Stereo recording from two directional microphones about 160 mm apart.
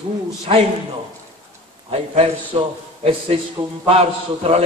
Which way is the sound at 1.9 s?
40° right (ahead or behind).